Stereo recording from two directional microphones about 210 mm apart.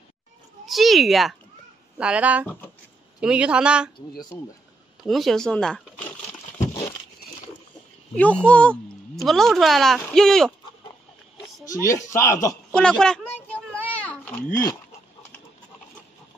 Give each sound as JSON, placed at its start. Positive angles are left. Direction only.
{"t": 0.7, "sound": "a woman's voice", "side_deg": 0}
{"t": 2.4, "sound": "speech", "side_deg": 10}
{"t": 3.2, "sound": "a woman's voice", "side_deg": -5}
{"t": 4.3, "sound": "speech", "side_deg": 10}
{"t": 5.0, "sound": "speech", "side_deg": 0}
{"t": 8.2, "sound": "a woman's voice", "side_deg": 5}
{"t": 11.6, "sound": "speech", "side_deg": 15}
{"t": 12.7, "sound": "a sound", "side_deg": 5}